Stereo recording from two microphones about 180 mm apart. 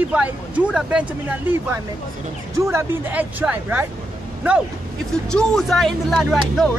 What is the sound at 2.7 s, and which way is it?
Speech, 15° right (ahead or behind).